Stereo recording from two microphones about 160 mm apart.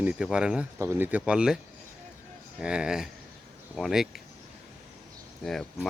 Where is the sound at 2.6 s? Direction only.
5° right (ahead or behind).